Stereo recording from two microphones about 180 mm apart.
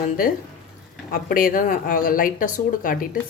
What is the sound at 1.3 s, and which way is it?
Speech, 50° left (ahead or behind).